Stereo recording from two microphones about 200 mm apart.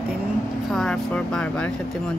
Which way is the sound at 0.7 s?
5° left (ahead or behind).